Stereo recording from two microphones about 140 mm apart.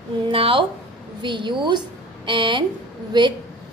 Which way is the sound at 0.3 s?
40° right (ahead or behind).